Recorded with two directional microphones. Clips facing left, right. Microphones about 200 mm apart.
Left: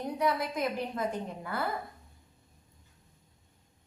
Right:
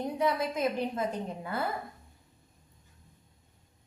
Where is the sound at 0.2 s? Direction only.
25° right (ahead or behind).